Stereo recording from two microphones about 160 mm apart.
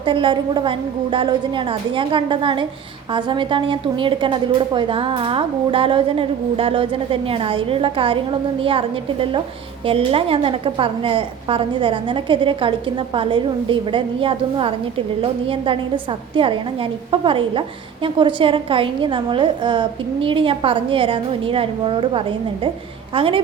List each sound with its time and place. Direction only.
0.0 s a woman's voice: 30° right (ahead or behind)